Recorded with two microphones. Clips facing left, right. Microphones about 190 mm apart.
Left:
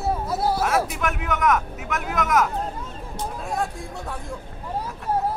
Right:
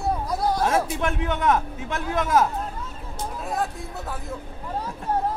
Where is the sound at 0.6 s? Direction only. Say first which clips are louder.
Even; 30° right (ahead or behind).